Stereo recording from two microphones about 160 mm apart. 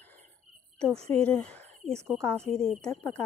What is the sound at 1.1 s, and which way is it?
Speech, 10° left (ahead or behind).